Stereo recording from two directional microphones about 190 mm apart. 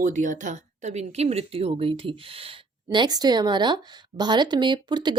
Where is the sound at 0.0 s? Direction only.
45° right (ahead or behind).